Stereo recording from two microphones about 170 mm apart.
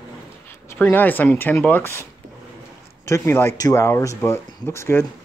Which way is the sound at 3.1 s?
15° left (ahead or behind).